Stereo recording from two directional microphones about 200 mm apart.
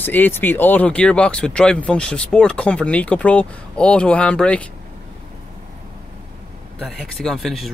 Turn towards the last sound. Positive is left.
turn(degrees=0)  # may be behind; listen again after turning